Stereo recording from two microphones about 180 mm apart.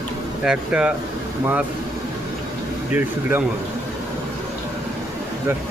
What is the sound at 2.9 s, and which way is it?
Speech, 10° right (ahead or behind).